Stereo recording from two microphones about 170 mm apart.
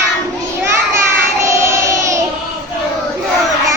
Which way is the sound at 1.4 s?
15° right (ahead or behind).